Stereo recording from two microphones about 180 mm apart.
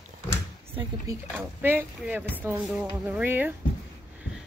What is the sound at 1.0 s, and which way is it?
Speech, 10° right (ahead or behind).